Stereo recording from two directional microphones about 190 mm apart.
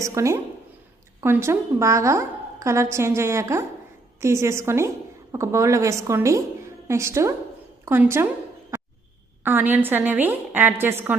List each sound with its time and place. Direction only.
0.0 s a woman's voice: 15° right (ahead or behind)
9.4 s a woman's voice: 10° right (ahead or behind)